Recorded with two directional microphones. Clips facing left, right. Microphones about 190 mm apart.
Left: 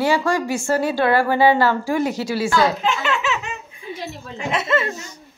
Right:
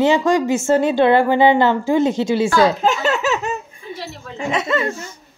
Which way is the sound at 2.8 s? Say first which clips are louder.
Right 4 dB; 40° right (ahead or behind).